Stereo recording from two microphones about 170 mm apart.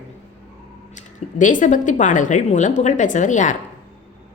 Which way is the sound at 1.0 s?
50° left (ahead or behind).